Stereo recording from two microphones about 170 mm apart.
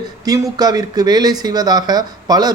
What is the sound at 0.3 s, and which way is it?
Speech, 20° right (ahead or behind).